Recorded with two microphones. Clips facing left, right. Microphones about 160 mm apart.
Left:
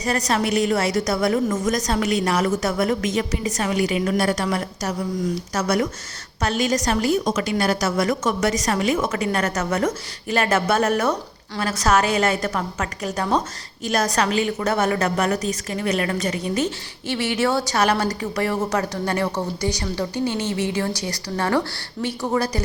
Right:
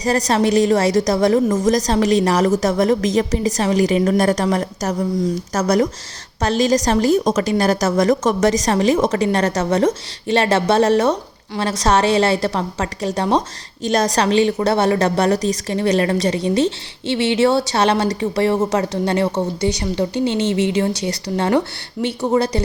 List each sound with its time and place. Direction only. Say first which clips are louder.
0.0 s a woman's voice: right 5 dB; 35° right (ahead or behind)